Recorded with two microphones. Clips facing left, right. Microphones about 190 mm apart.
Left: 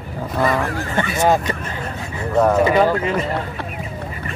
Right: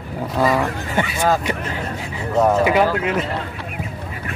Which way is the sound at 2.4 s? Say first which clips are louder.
Left 1 dB; 5° right (ahead or behind).